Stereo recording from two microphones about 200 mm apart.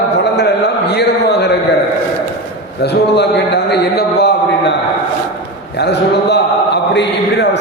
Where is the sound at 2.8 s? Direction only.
55° left (ahead or behind).